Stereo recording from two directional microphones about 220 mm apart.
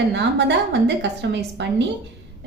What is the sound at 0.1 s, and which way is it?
A woman's voice, 50° right (ahead or behind).